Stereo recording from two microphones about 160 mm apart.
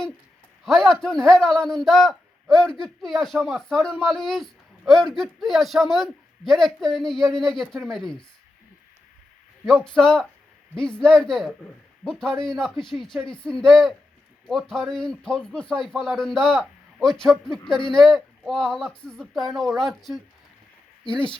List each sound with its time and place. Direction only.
0.6 s speech: centre (ahead or behind)
9.6 s speech: 5° left (ahead or behind)
17.6 s speech: 30° left (ahead or behind)
17.9 s speech: centre (ahead or behind)